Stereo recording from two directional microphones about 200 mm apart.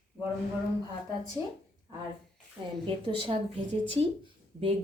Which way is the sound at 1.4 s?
15° right (ahead or behind).